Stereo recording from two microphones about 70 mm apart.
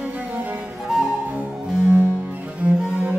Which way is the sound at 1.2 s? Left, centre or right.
Right.